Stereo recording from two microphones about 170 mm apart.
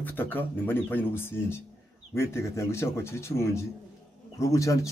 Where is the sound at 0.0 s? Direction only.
10° left (ahead or behind).